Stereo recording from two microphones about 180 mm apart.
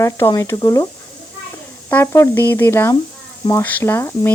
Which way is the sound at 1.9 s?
15° left (ahead or behind).